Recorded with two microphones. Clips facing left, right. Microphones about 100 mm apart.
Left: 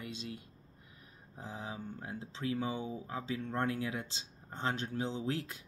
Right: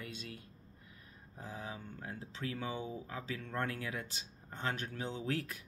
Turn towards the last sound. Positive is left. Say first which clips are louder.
# left 1 dB
turn(degrees=25)  # may be behind; listen again after turning